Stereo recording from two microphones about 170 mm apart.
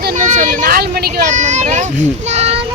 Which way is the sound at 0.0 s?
50° right (ahead or behind).